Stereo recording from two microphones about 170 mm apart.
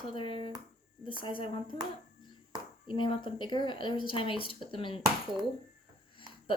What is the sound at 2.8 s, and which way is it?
Speech, 30° left (ahead or behind).